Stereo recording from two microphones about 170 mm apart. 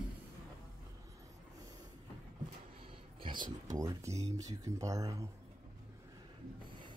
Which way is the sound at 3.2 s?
25° right (ahead or behind).